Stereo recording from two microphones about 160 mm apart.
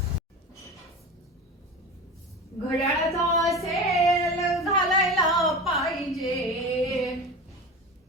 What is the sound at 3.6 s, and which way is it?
Child singing, centre (ahead or behind).